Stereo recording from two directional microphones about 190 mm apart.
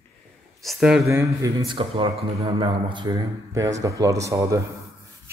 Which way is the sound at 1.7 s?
25° right (ahead or behind).